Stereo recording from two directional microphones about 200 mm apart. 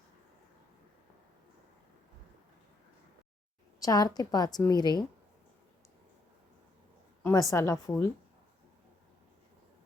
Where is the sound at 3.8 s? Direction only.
20° left (ahead or behind).